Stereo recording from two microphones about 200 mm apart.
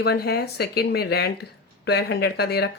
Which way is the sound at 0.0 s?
50° left (ahead or behind).